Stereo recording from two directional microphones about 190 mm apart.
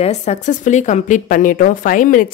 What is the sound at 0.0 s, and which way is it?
A woman's voice, 35° left (ahead or behind).